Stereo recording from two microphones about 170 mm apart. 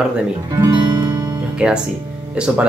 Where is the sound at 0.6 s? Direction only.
20° right (ahead or behind).